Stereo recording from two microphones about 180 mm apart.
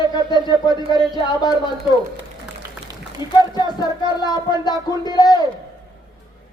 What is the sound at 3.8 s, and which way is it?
A man's voice, 25° left (ahead or behind).